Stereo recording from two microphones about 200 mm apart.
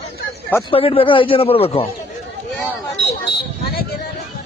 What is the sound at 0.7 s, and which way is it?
A man's voice, 25° left (ahead or behind).